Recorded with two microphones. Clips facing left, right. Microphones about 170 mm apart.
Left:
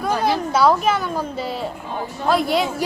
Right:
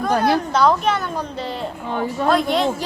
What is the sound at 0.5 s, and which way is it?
A woman's voice, 5° left (ahead or behind).